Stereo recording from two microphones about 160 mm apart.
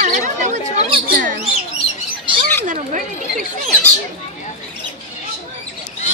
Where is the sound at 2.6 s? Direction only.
55° right (ahead or behind).